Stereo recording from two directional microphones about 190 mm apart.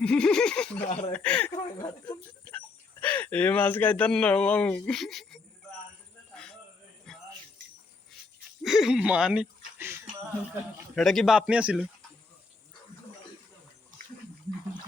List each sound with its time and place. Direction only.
0.0 s a man's voice: 5° left (ahead or behind)
0.8 s speech: 30° left (ahead or behind)
1.1 s speech: 5° left (ahead or behind)
1.5 s speech: 25° left (ahead or behind)
3.0 s speech: 10° left (ahead or behind)
6.3 s a sound: 5° left (ahead or behind)
7.1 s jingle bell: 5° left (ahead or behind)
8.6 s speech: centre (ahead or behind)
10.9 s a man's voice: centre (ahead or behind)